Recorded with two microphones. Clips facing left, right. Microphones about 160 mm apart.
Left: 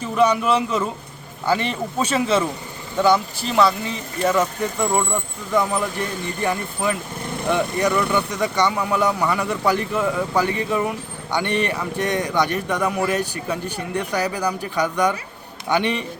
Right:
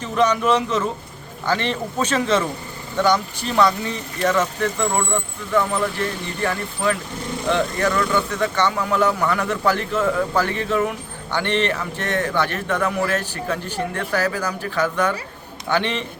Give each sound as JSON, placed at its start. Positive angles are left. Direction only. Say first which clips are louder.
{"t": 0.0, "sound": "a man's voice", "louder": "left 1 dB", "side_deg": 10}
{"t": 6.4, "sound": "a man's voice", "louder": "right 1 dB", "side_deg": 15}